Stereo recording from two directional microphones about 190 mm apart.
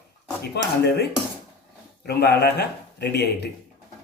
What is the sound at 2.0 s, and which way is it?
Speech, 55° left (ahead or behind).